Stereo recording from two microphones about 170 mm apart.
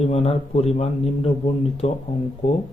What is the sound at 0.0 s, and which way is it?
Speech, 35° left (ahead or behind).